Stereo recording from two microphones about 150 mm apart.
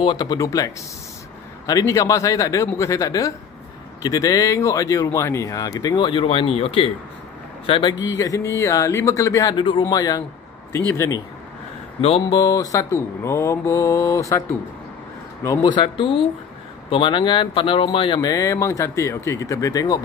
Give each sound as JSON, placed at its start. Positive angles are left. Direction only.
{"t": 0.0, "sound": "speech", "side_deg": 30}
{"t": 1.7, "sound": "speech", "side_deg": 20}
{"t": 8.2, "sound": "speech", "side_deg": 20}
{"t": 12.3, "sound": "speech", "side_deg": 25}
{"t": 15.6, "sound": "speech", "side_deg": 30}